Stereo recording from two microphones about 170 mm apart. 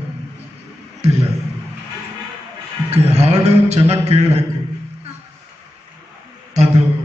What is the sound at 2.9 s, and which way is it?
A man's voice, 40° right (ahead or behind).